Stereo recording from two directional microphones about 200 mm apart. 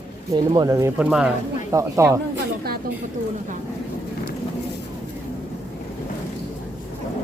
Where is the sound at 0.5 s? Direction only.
15° right (ahead or behind).